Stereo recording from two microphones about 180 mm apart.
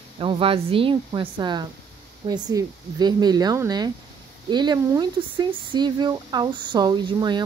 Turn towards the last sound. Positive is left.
turn(degrees=-25)  # may be behind; listen again after turning